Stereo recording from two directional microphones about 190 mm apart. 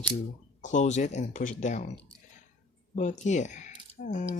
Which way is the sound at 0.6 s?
40° left (ahead or behind).